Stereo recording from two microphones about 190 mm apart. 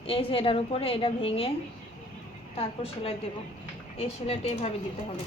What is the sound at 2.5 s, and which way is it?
A woman's voice, 30° left (ahead or behind).